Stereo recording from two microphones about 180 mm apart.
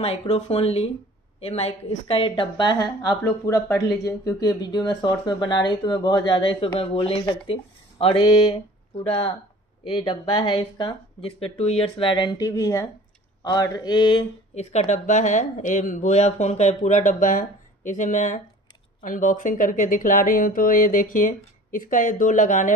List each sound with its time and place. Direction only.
0.0 s speech: 35° left (ahead or behind)
9.8 s speech: 30° left (ahead or behind)
14.5 s speech: 35° left (ahead or behind)